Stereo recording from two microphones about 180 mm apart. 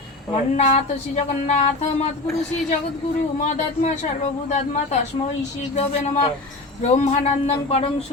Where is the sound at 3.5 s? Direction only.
40° left (ahead or behind).